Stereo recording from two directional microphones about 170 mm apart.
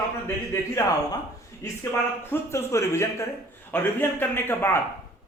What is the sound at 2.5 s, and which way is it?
A man's voice, 15° left (ahead or behind).